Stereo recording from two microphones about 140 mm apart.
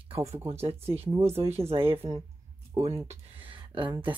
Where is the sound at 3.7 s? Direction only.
35° right (ahead or behind).